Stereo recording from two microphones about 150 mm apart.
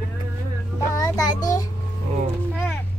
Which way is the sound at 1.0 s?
25° left (ahead or behind).